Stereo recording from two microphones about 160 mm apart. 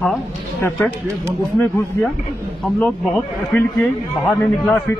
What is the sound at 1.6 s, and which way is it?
A man's voice, 10° left (ahead or behind).